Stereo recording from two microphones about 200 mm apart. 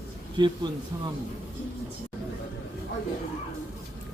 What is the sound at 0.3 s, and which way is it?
Speech, 20° right (ahead or behind).